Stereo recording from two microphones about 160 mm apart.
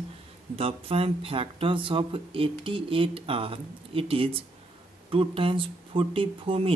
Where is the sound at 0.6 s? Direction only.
35° right (ahead or behind).